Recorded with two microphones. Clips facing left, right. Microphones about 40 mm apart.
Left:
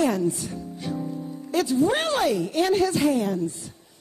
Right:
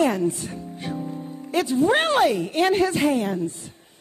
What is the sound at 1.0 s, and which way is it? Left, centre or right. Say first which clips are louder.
Music: even; right.